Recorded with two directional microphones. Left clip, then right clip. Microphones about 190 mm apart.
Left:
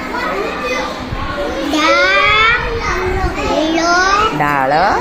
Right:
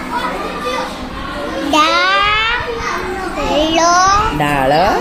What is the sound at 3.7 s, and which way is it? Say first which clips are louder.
A child's voice: right 2 dB; 25° right (ahead or behind).